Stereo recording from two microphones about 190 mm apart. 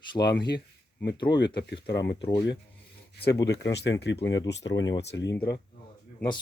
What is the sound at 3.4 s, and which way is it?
Speech, 65° left (ahead or behind).